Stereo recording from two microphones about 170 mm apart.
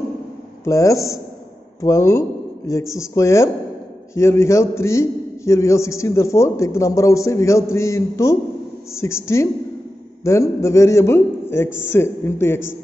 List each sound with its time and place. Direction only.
0.7 s a man's voice: 20° left (ahead or behind)